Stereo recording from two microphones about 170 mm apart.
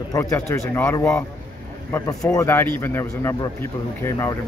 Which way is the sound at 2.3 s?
15° left (ahead or behind).